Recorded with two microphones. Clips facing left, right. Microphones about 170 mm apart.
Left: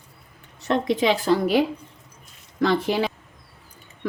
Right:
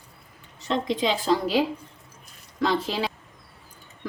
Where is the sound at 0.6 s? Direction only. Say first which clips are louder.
Left 4 dB; 65° left (ahead or behind).